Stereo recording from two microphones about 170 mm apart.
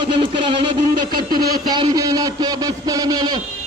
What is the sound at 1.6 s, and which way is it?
A man's voice, 25° right (ahead or behind).